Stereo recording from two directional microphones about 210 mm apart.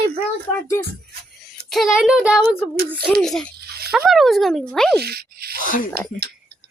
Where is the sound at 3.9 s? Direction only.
Centre (ahead or behind).